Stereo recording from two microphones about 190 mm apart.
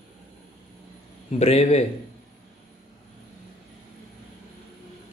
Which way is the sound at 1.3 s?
35° left (ahead or behind).